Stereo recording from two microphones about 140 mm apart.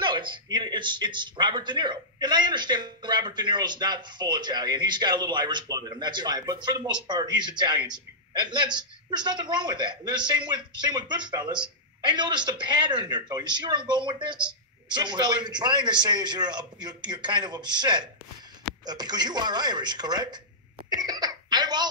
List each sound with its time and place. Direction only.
0.0 s speech: 35° right (ahead or behind)
21.0 s cough: 30° right (ahead or behind)